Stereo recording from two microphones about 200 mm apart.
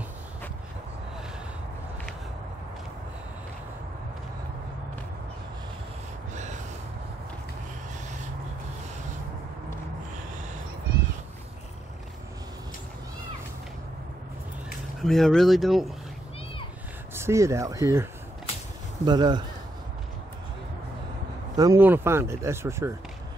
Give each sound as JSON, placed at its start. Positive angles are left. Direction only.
{"t": 6.3, "sound": "gasp", "side_deg": -35}
{"t": 15.0, "sound": "speech", "side_deg": 0}
{"t": 17.1, "sound": "speech", "side_deg": -15}
{"t": 19.0, "sound": "speech", "side_deg": -20}
{"t": 21.5, "sound": "speech", "side_deg": -15}